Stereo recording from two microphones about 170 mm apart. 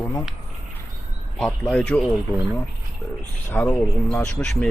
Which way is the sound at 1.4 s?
5° left (ahead or behind).